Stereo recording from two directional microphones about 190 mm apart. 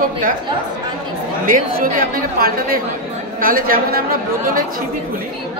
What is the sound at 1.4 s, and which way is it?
A woman's voice, 50° right (ahead or behind).